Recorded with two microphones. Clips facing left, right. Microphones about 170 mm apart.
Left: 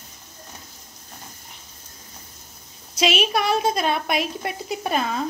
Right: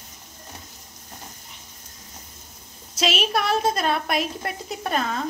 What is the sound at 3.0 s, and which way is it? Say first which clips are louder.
A woman's voice: left 2 dB; centre (ahead or behind).